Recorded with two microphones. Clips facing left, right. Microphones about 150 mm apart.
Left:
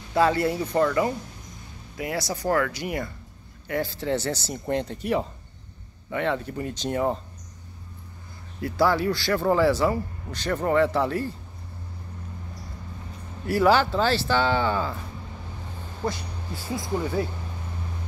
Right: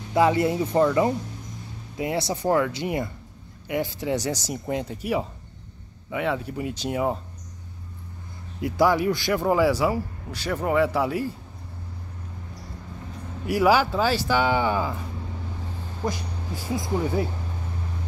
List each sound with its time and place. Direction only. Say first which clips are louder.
0.1 s a man's voice: right 1 dB; 15° right (ahead or behind)
8.5 s a man's voice: right 2 dB; 15° right (ahead or behind)
13.5 s a man's voice: even; 10° right (ahead or behind)
16.0 s speech: even; 15° right (ahead or behind)